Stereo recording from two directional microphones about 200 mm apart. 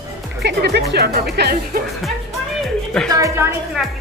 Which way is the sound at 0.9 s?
55° right (ahead or behind).